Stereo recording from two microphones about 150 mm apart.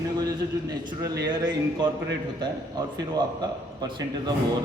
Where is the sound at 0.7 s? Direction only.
25° right (ahead or behind).